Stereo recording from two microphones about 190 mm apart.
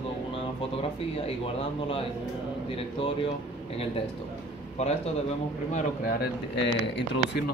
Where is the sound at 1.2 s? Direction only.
30° left (ahead or behind).